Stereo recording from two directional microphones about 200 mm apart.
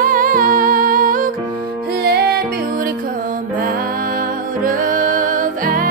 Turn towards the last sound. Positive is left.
turn(degrees=-45)  # may be behind; listen again after turning